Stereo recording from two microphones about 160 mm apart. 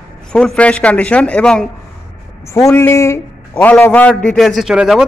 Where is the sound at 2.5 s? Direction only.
20° left (ahead or behind).